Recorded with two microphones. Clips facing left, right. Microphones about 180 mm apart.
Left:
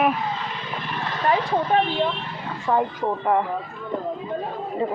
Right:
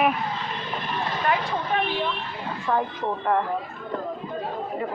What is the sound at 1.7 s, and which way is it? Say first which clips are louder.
Speech: left 5 dB; 50° left (ahead or behind).